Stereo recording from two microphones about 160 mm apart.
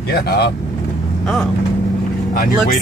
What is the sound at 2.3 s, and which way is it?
Speech, 65° left (ahead or behind).